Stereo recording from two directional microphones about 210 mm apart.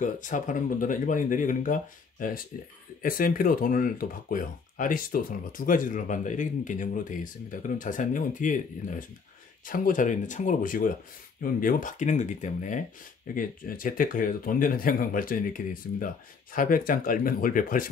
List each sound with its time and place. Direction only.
0.0 s speech: 40° left (ahead or behind)